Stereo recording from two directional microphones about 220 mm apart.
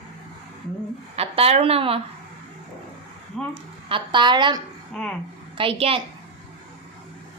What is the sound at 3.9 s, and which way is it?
Speech, 20° right (ahead or behind).